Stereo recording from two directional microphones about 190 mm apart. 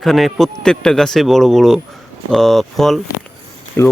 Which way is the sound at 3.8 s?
15° left (ahead or behind).